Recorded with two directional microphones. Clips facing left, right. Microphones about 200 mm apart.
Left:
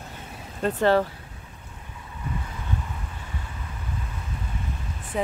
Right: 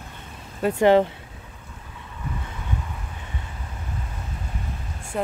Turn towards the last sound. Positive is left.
turn(degrees=0)  # may be behind; listen again after turning